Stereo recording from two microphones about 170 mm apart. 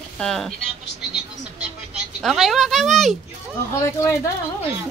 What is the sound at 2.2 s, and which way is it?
Speech, centre (ahead or behind).